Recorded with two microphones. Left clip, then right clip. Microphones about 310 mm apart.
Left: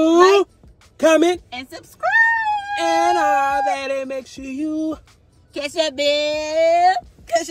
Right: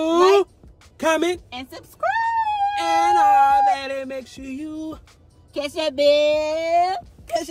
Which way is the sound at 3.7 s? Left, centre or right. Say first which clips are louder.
Left 2 dB; centre.